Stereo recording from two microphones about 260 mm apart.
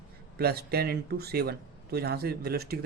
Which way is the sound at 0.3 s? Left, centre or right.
Right.